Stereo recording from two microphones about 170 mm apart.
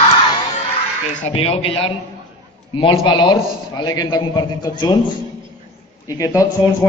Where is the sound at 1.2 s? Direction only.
30° left (ahead or behind).